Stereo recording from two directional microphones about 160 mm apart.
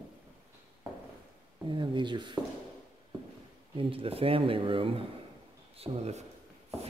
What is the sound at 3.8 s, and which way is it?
Speech, 35° right (ahead or behind).